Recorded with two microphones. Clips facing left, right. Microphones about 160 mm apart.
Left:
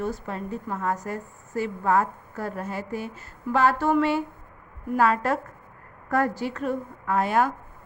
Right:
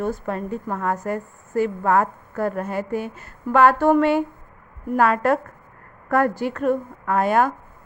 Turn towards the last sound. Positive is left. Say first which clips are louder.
# right 4 dB
turn(degrees=-55)  # may be behind; listen again after turning